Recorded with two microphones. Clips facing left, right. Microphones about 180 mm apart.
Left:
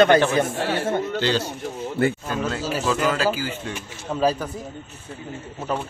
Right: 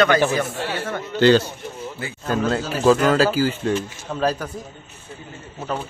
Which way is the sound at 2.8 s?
40° right (ahead or behind).